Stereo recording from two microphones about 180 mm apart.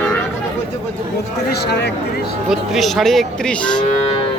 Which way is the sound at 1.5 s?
65° left (ahead or behind).